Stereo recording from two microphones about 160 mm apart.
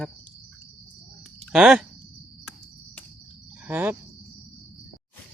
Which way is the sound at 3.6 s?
10° right (ahead or behind).